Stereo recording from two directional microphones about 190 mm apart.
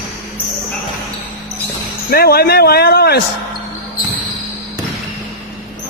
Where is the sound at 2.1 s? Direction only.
55° left (ahead or behind).